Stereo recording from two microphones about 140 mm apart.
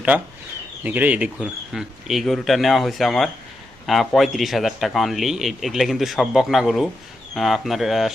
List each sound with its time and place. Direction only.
0.1 s a man's voice: 15° right (ahead or behind)